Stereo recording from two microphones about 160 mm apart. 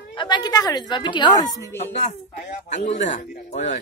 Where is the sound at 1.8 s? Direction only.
45° left (ahead or behind).